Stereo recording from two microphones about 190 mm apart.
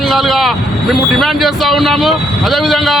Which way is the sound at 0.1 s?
Centre (ahead or behind).